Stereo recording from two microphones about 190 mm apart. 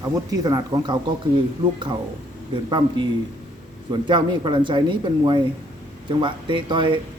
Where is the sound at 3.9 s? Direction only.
25° right (ahead or behind).